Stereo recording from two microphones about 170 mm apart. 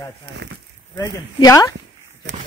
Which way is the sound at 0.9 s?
20° left (ahead or behind).